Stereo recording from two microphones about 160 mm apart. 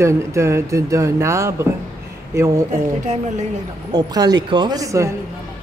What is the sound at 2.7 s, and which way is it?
Speech, 45° right (ahead or behind).